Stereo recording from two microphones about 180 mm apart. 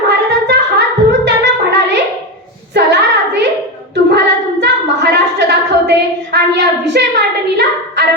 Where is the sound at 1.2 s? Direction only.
70° right (ahead or behind).